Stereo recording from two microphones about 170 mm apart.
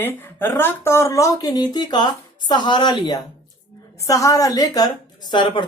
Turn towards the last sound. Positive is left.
turn(degrees=25)  # may be behind; listen again after turning